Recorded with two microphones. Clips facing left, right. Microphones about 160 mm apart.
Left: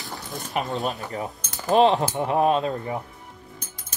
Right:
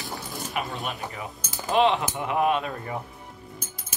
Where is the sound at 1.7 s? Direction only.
40° left (ahead or behind).